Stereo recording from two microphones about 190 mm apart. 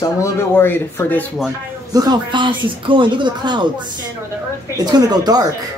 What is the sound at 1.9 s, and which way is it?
Speech, 20° right (ahead or behind).